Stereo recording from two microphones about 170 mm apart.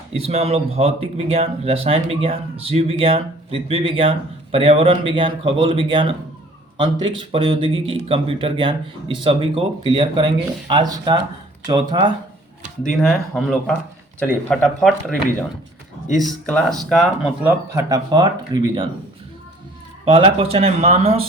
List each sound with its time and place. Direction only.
0.1 s speech: 35° right (ahead or behind)
12.9 s speech: 5° left (ahead or behind)
16.2 s speech: centre (ahead or behind)
17.7 s speech: 20° right (ahead or behind)
20.1 s speech: 30° right (ahead or behind)